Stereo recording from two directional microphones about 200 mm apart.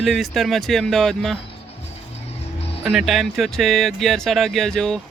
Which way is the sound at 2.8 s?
Centre (ahead or behind).